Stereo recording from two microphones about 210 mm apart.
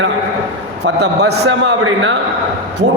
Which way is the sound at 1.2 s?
55° right (ahead or behind).